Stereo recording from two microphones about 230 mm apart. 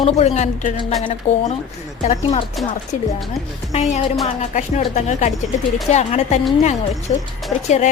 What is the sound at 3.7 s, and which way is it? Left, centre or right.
A woman's voice, left.